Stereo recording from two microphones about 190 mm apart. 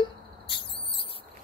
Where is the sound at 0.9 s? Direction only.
30° left (ahead or behind).